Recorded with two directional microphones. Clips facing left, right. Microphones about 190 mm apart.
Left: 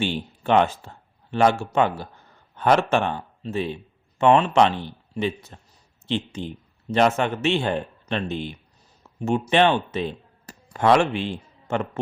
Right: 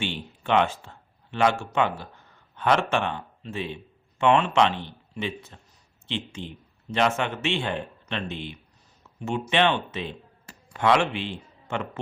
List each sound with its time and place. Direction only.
0.0 s speech: 40° left (ahead or behind)
9.0 s a sound: 35° left (ahead or behind)
9.5 s speech: 40° left (ahead or behind)